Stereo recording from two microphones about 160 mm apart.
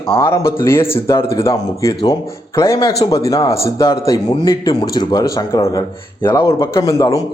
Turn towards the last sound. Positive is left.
turn(degrees=20)  # may be behind; listen again after turning